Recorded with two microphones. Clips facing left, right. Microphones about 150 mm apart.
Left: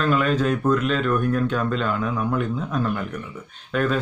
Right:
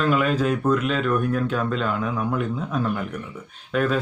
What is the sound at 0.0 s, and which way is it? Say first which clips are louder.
A man's voice: even; 5° right (ahead or behind).